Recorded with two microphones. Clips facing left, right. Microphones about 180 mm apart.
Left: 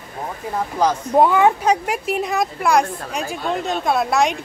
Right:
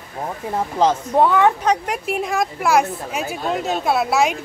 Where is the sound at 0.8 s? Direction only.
25° right (ahead or behind).